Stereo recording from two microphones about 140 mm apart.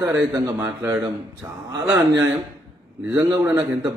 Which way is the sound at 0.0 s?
20° right (ahead or behind).